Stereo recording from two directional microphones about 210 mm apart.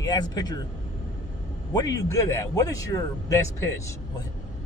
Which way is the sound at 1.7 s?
15° left (ahead or behind).